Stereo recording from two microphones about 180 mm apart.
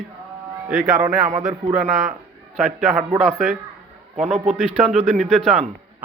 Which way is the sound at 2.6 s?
Centre (ahead or behind).